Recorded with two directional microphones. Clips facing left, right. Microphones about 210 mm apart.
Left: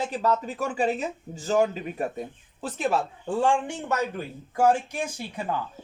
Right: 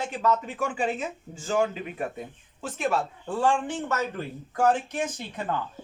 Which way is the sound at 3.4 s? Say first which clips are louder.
Right 1 dB; 15° left (ahead or behind).